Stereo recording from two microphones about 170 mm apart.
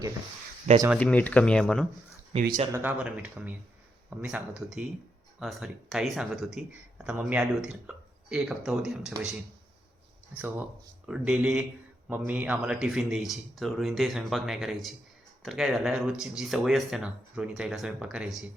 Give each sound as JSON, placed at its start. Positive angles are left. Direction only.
{"t": 0.9, "sound": "speech", "side_deg": 10}
{"t": 2.3, "sound": "speech", "side_deg": -35}
{"t": 2.7, "sound": "speech", "side_deg": -10}
{"t": 10.3, "sound": "speech", "side_deg": -10}